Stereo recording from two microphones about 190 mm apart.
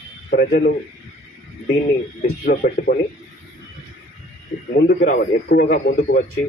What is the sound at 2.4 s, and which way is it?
Speech, 55° left (ahead or behind).